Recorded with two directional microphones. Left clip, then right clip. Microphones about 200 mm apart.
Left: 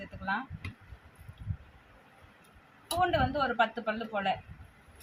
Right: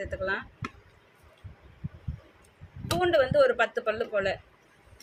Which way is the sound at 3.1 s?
65° right (ahead or behind).